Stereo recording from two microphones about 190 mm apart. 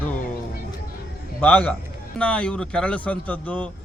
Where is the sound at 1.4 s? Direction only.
5° left (ahead or behind).